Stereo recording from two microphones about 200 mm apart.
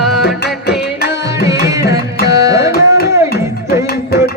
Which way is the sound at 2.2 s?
15° right (ahead or behind).